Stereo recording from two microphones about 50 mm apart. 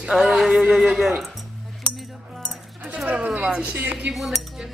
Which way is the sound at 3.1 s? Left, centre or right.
Right.